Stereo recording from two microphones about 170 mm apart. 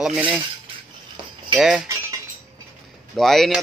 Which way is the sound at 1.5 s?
Centre (ahead or behind).